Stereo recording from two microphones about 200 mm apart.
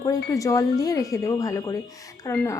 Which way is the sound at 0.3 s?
15° left (ahead or behind).